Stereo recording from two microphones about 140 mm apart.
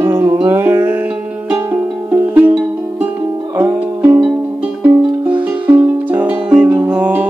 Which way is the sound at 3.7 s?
15° right (ahead or behind).